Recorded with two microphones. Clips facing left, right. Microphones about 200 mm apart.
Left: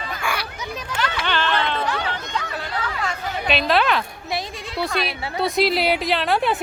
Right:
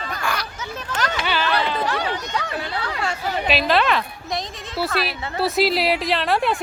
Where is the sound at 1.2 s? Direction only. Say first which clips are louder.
Even; 10° right (ahead or behind).